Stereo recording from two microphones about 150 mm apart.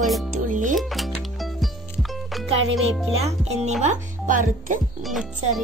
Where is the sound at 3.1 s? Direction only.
45° right (ahead or behind).